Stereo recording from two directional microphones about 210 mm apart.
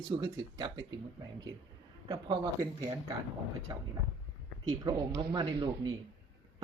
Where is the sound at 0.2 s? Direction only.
20° right (ahead or behind).